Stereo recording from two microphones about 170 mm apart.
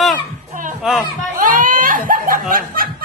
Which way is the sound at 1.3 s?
50° right (ahead or behind).